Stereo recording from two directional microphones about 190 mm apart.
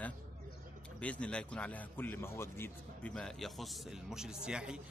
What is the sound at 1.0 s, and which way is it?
A man's voice, 5° left (ahead or behind).